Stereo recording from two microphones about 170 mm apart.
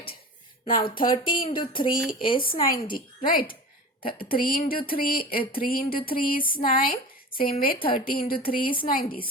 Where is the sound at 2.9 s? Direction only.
55° left (ahead or behind).